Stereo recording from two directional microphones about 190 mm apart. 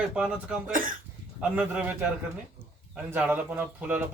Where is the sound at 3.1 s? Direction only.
10° right (ahead or behind).